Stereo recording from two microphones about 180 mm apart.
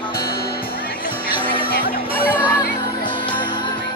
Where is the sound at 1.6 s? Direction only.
55° left (ahead or behind).